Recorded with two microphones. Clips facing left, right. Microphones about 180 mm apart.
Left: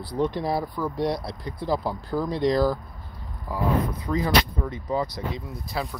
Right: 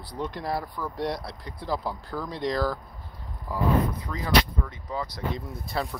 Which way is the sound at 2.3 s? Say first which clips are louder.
Left 6 dB; 30° left (ahead or behind).